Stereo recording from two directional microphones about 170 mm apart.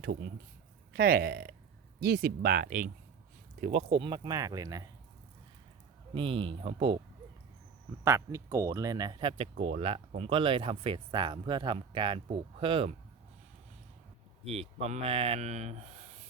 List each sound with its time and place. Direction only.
0.0 s speech: 65° right (ahead or behind); by 3.8 s 40° right (ahead or behind)
3.8 s speech: 30° right (ahead or behind)
6.1 s speech: 30° right (ahead or behind)
8.0 s speech: 15° right (ahead or behind); by 12.9 s 30° right (ahead or behind)
14.4 s speech: 35° right (ahead or behind)